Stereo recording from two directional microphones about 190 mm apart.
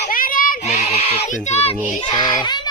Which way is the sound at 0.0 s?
45° left (ahead or behind).